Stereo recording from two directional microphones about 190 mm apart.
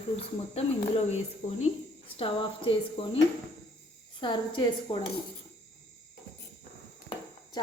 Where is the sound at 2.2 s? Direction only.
30° left (ahead or behind).